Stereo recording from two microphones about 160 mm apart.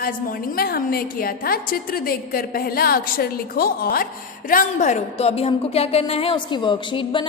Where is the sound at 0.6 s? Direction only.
70° left (ahead or behind).